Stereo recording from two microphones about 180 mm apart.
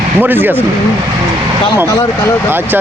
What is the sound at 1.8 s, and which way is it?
Speech, 15° left (ahead or behind).